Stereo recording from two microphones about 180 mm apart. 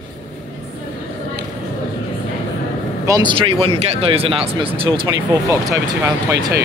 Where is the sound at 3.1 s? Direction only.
25° right (ahead or behind).